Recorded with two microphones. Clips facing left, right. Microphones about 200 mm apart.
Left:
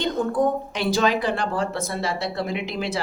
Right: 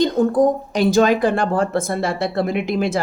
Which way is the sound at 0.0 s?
40° right (ahead or behind).